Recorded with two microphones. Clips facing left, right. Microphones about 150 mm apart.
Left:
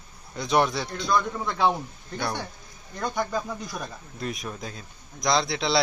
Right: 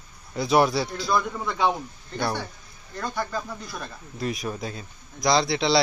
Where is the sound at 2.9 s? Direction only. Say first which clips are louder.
Left 2 dB; 15° left (ahead or behind).